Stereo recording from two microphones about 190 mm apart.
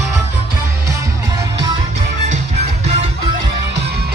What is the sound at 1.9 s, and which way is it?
Music, 40° right (ahead or behind).